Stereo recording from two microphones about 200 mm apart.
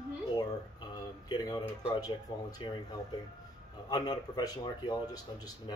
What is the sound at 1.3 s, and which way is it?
Speech, 20° left (ahead or behind).